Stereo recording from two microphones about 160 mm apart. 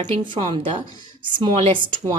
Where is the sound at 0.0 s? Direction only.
30° right (ahead or behind).